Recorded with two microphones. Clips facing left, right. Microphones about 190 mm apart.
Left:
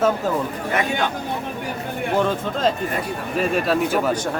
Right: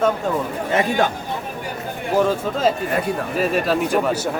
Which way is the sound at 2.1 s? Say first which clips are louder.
Right 3 dB; 5° right (ahead or behind).